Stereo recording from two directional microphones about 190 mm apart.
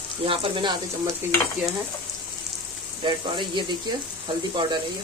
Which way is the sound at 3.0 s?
25° right (ahead or behind).